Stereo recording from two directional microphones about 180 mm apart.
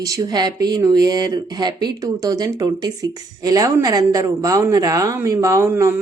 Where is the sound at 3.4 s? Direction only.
20° right (ahead or behind).